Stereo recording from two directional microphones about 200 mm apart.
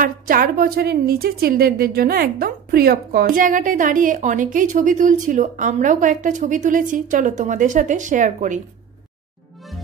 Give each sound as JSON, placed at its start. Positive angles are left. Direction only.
{"t": 0.0, "sound": "a woman's voice", "side_deg": -45}